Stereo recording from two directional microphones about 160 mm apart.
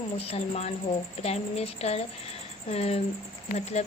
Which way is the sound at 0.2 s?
40° left (ahead or behind).